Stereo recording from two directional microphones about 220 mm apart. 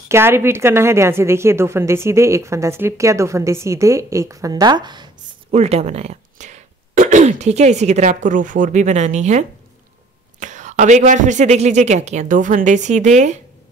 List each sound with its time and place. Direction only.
0.1 s a woman's voice: 10° right (ahead or behind); by 13.4 s 30° right (ahead or behind)